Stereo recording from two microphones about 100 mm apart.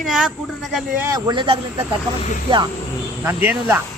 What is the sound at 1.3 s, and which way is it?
Speech, 65° right (ahead or behind).